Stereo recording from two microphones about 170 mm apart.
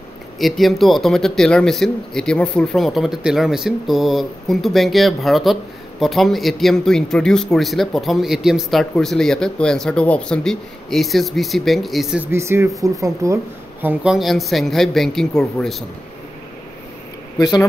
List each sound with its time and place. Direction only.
0.4 s speech: centre (ahead or behind)
12.3 s speech: 15° right (ahead or behind); by 15.8 s 5° left (ahead or behind)
17.4 s speech: 20° left (ahead or behind)